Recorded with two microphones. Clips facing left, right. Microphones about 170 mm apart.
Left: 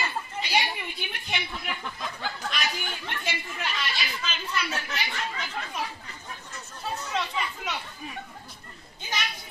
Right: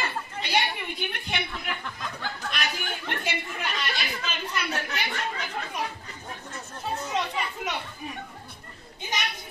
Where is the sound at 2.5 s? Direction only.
55° right (ahead or behind).